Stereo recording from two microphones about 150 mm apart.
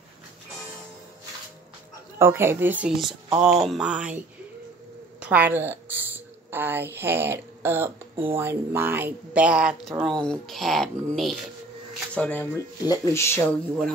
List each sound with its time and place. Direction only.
2.1 s speech: 15° right (ahead or behind)
5.2 s speech: 10° right (ahead or behind); by 12.6 s 10° left (ahead or behind)
12.8 s speech: 20° left (ahead or behind)